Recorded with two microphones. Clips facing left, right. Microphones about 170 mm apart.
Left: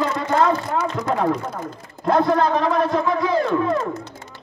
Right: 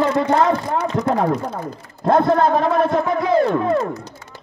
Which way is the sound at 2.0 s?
50° right (ahead or behind).